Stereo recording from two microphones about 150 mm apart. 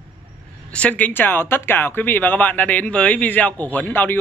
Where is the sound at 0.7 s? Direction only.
10° left (ahead or behind).